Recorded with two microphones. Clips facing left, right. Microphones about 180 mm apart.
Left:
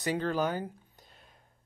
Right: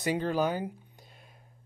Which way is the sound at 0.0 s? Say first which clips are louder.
Right 2 dB; 15° right (ahead or behind).